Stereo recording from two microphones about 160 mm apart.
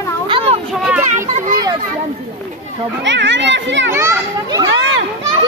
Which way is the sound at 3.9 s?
20° right (ahead or behind).